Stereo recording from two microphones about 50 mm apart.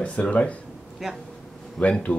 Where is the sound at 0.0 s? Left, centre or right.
Left.